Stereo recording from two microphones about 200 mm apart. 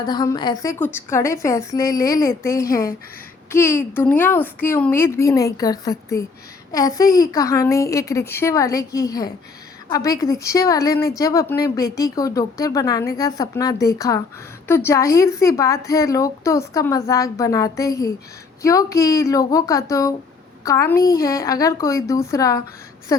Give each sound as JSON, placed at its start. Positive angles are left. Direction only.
{"t": 0.0, "sound": "a woman's voice", "side_deg": 20}